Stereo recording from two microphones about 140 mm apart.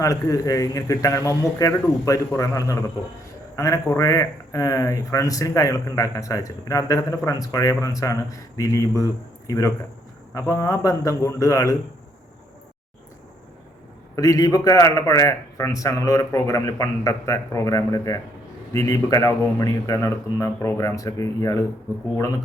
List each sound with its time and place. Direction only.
0.0 s speech: 25° left (ahead or behind)
14.2 s speech: 25° left (ahead or behind)